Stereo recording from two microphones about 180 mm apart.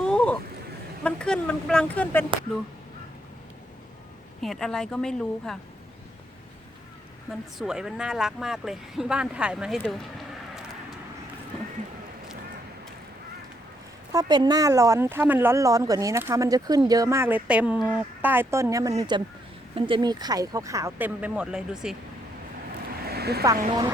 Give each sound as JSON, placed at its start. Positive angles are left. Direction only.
{"t": 0.0, "sound": "a sound", "side_deg": 5}
{"t": 1.0, "sound": "speech", "side_deg": 5}
{"t": 4.4, "sound": "speech", "side_deg": 0}
{"t": 7.3, "sound": "speech", "side_deg": -5}
{"t": 14.1, "sound": "speech", "side_deg": -20}
{"t": 23.0, "sound": "vehicle", "side_deg": -60}
{"t": 23.6, "sound": "a woman's voice", "side_deg": -25}